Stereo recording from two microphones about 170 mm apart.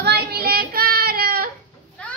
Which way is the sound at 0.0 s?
75° right (ahead or behind).